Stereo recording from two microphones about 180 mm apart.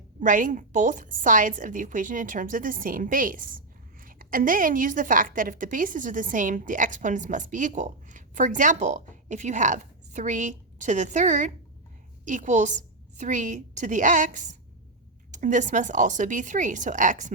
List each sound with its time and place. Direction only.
0.2 s a woman's voice: 45° right (ahead or behind)